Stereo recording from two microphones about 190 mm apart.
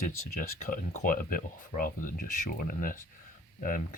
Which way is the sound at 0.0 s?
40° left (ahead or behind).